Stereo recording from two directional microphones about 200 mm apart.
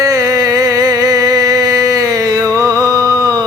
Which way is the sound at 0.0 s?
15° right (ahead or behind).